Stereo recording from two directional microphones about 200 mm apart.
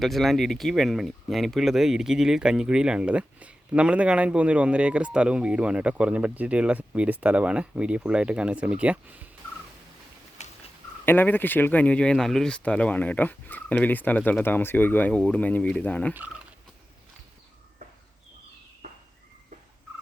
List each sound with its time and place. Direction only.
0.0 s speech: centre (ahead or behind)
10.4 s a sound: 35° left (ahead or behind)
11.0 s speech: 10° left (ahead or behind)